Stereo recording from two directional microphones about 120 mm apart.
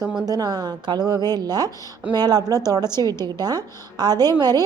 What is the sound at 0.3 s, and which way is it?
A woman's voice, 30° right (ahead or behind).